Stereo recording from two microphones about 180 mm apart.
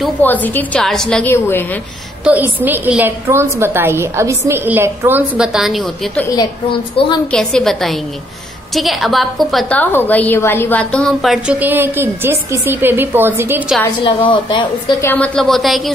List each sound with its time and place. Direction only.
0.2 s a woman's voice: 10° left (ahead or behind)
2.2 s a woman's voice: 10° right (ahead or behind)
7.2 s a woman's voice: 5° left (ahead or behind)
14.0 s a woman's voice: 25° left (ahead or behind)
15.0 s a woman's voice: 10° left (ahead or behind)